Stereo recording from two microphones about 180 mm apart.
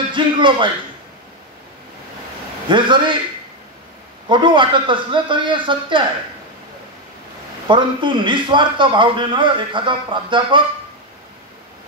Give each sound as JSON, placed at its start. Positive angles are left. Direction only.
{"t": 0.1, "sound": "music", "side_deg": -25}
{"t": 2.7, "sound": "a man's voice", "side_deg": -25}
{"t": 4.3, "sound": "a man's voice", "side_deg": -25}
{"t": 7.6, "sound": "a man's voice", "side_deg": -25}